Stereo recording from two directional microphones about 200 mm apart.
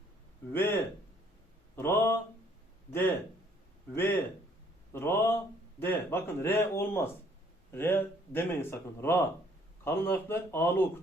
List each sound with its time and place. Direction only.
0.5 s speech: 10° left (ahead or behind)
3.9 s speech: 10° left (ahead or behind)